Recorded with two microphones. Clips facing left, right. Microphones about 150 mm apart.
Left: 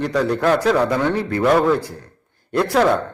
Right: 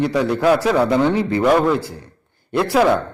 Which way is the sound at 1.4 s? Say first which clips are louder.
Left 1 dB; centre (ahead or behind).